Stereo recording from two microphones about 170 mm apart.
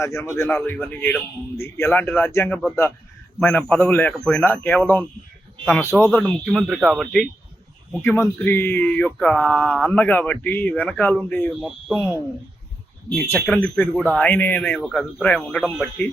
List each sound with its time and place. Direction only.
0.0 s speech: 15° left (ahead or behind)
6.1 s speech: 5° left (ahead or behind)
8.0 s speech: 15° left (ahead or behind); by 9.9 s 5° right (ahead or behind)
9.9 s speech: 10° left (ahead or behind)
13.2 s speech: 10° left (ahead or behind)